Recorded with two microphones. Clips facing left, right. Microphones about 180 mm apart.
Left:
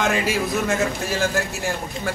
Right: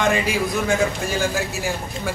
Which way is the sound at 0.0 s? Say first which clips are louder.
Right 1 dB; centre (ahead or behind).